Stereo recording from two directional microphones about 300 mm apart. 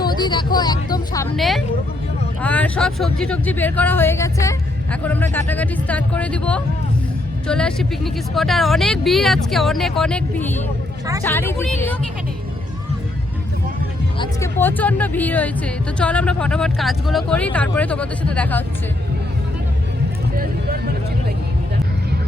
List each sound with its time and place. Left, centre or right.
0.0 s speech: centre
1.4 s speech: centre
14.2 s speech: centre
20.3 s vehicle: right